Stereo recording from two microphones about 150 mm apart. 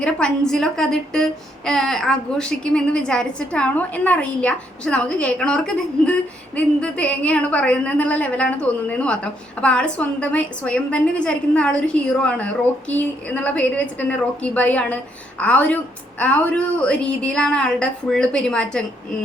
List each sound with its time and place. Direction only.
0.0 s a woman's voice: 5° left (ahead or behind)